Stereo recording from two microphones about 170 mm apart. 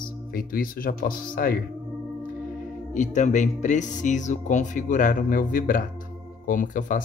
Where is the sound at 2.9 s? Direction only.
45° left (ahead or behind).